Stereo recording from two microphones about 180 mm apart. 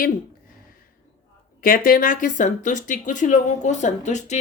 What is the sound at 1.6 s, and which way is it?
Speech, 50° left (ahead or behind).